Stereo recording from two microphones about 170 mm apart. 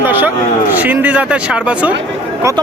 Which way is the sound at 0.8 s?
10° right (ahead or behind).